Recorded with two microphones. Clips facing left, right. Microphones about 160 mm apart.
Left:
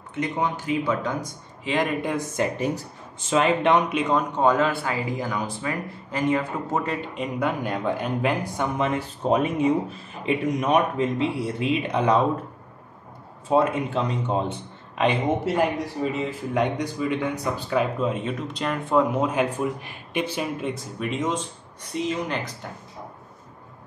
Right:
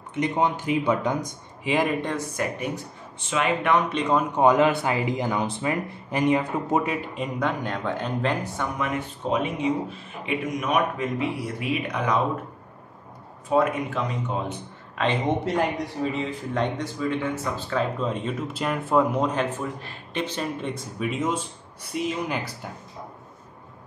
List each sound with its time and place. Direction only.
0.1 s speech: 20° right (ahead or behind)
2.3 s speech: 25° left (ahead or behind)
2.7 s speech: 40° left (ahead or behind)
3.9 s a man's voice: centre (ahead or behind)
4.4 s speech: 15° right (ahead or behind)
7.2 s speech: 5° left (ahead or behind)
8.7 s speech: 25° left (ahead or behind)
9.2 s speech: 45° left (ahead or behind)
10.2 s speech: 30° left (ahead or behind)
13.6 s speech: 30° left (ahead or behind)
15.2 s a man's voice: 5° left (ahead or behind)